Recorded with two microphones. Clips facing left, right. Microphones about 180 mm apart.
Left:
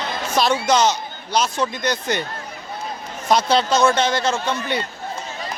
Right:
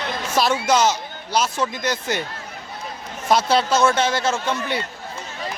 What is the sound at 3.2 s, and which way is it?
Speech, 5° right (ahead or behind).